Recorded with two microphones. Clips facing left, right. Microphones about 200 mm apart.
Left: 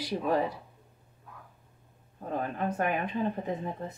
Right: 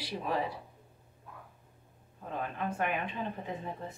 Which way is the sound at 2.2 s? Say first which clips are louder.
Left 4 dB; 40° left (ahead or behind).